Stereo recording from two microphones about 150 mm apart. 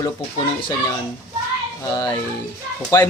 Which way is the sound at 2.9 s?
20° left (ahead or behind).